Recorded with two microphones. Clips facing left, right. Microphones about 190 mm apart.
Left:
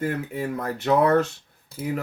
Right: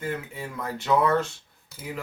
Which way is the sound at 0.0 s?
55° left (ahead or behind).